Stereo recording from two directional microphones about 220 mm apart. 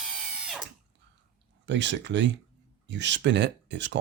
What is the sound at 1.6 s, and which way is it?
Speech, 55° right (ahead or behind).